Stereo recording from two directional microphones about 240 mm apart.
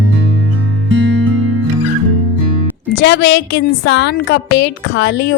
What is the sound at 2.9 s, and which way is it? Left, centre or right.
A woman's voice, left.